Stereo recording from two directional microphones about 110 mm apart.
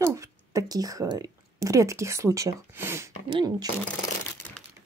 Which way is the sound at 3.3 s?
45° right (ahead or behind).